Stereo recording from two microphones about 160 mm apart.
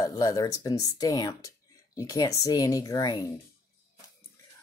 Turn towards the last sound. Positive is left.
turn(degrees=25)  # may be behind; listen again after turning